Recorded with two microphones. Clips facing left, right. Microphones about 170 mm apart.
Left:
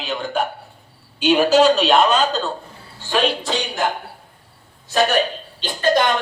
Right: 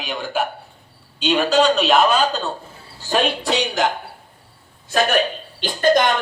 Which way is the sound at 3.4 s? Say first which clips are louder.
Right 3 dB; 70° right (ahead or behind).